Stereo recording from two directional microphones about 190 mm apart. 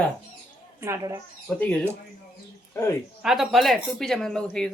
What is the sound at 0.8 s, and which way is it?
Speech, 15° right (ahead or behind).